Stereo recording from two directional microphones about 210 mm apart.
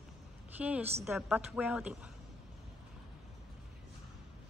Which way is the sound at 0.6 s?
5° right (ahead or behind).